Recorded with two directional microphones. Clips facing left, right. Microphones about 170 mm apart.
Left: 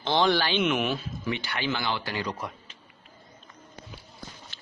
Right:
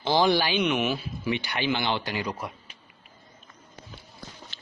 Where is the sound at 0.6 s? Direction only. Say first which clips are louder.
Right 1 dB; centre (ahead or behind).